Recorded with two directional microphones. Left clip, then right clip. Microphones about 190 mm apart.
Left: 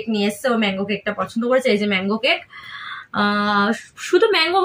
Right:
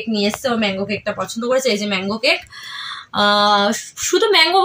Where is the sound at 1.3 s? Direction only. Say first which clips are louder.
Even; 35° right (ahead or behind).